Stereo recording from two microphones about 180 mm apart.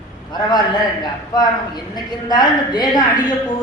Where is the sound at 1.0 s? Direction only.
20° left (ahead or behind).